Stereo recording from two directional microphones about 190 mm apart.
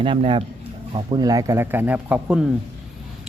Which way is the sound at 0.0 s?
25° right (ahead or behind).